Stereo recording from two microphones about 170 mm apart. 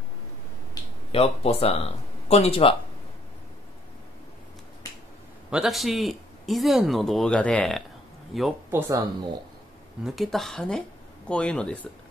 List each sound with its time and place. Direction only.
1.1 s speech: 35° left (ahead or behind)
5.5 s speech: centre (ahead or behind)
8.6 s speech: 15° right (ahead or behind)
10.0 s speech: centre (ahead or behind)